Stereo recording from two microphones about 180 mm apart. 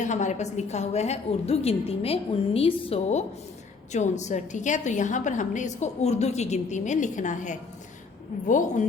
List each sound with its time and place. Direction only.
0.0 s a woman's voice: 40° left (ahead or behind)